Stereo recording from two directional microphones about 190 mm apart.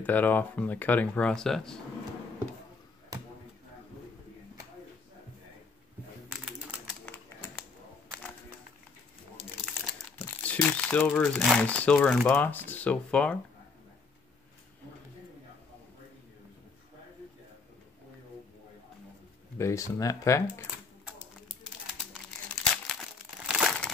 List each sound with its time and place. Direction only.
0.0 s speech: 10° left (ahead or behind)
6.3 s typing: 5° right (ahead or behind)
7.1 s a sound: 10° left (ahead or behind)
9.7 s speech: 5° left (ahead or behind)
19.6 s speech: 15° left (ahead or behind)
22.8 s crumpling: centre (ahead or behind)